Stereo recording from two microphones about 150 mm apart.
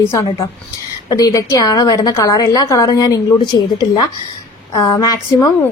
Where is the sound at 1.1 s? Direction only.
25° left (ahead or behind).